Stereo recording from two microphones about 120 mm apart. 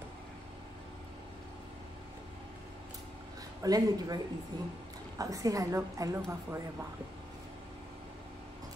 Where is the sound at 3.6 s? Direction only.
30° right (ahead or behind).